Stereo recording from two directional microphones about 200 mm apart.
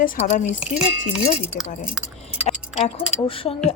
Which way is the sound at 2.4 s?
35° left (ahead or behind).